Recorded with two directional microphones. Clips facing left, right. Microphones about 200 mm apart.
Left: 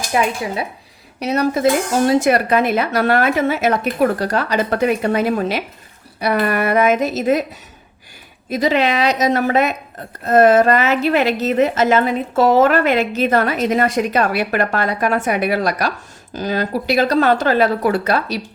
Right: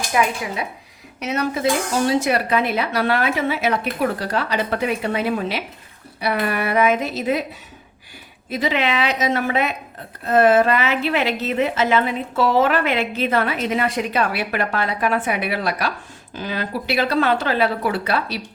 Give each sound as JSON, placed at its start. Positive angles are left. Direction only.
{"t": 0.1, "sound": "a woman's voice", "side_deg": 30}
{"t": 8.4, "sound": "a woman's voice", "side_deg": 40}